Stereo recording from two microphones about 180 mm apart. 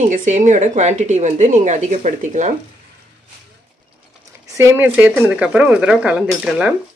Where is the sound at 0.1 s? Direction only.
45° right (ahead or behind).